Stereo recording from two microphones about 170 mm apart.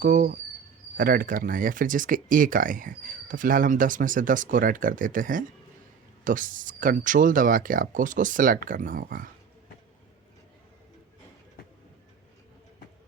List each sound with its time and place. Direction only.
0.0 s speech: 50° right (ahead or behind)